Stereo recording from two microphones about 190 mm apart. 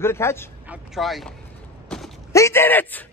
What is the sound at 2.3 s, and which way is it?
Speech, 15° left (ahead or behind).